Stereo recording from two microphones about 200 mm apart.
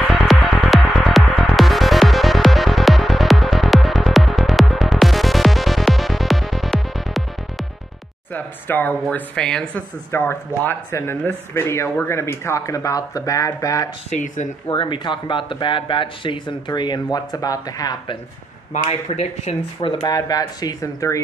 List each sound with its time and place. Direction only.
0.1 s music: centre (ahead or behind)
8.3 s speech: 10° left (ahead or behind)
14.1 s speech: 40° left (ahead or behind)
14.7 s speech: 25° left (ahead or behind)
18.7 s speech: 35° left (ahead or behind); by 21.2 s 15° left (ahead or behind)